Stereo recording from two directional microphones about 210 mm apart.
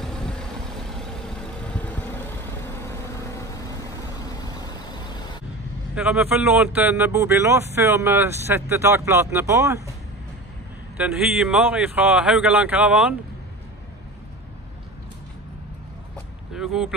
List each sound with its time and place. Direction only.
0.0 s vehicle: 5° left (ahead or behind)
4.5 s vehicle: 20° left (ahead or behind)
5.9 s speech: 5° right (ahead or behind)
11.0 s speech: 5° right (ahead or behind)
16.5 s speech: 5° right (ahead or behind)